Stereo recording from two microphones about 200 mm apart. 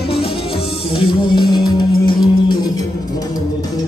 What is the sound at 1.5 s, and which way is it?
Music, 20° left (ahead or behind).